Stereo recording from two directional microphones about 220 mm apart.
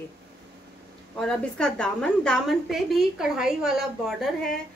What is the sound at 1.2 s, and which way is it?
A woman's voice, 5° left (ahead or behind).